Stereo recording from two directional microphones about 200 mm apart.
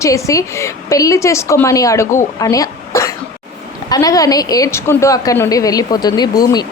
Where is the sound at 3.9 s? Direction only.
15° left (ahead or behind).